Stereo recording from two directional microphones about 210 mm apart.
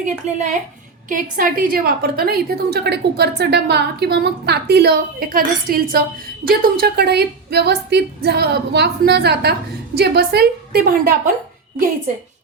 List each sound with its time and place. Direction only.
0.0 s a woman's voice: 35° right (ahead or behind)